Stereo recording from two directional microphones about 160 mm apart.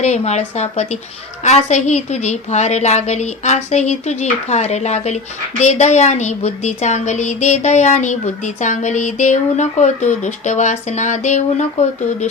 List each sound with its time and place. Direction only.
0.0 s a woman's voice: 45° left (ahead or behind)